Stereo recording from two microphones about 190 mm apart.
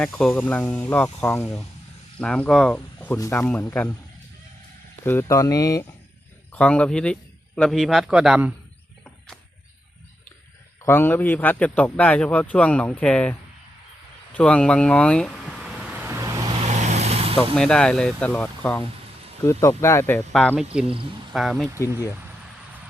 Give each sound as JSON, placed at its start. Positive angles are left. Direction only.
{"t": 0.0, "sound": "a man's voice", "side_deg": 5}
{"t": 5.0, "sound": "a man's voice", "side_deg": 15}
{"t": 6.5, "sound": "speech", "side_deg": 5}
{"t": 9.0, "sound": "vehicle", "side_deg": 5}
{"t": 10.8, "sound": "a man's voice", "side_deg": 10}
{"t": 14.3, "sound": "a sound", "side_deg": 5}
{"t": 17.5, "sound": "a man's voice", "side_deg": 5}
{"t": 20.1, "sound": "speech", "side_deg": 5}
{"t": 20.8, "sound": "speech", "side_deg": -30}
{"t": 21.3, "sound": "speech", "side_deg": 0}